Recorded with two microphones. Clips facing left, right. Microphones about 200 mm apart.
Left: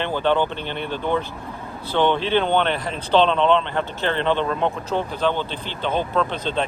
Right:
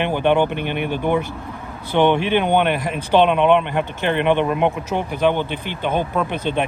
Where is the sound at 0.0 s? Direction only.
15° right (ahead or behind).